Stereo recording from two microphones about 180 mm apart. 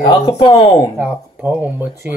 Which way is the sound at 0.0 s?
20° left (ahead or behind).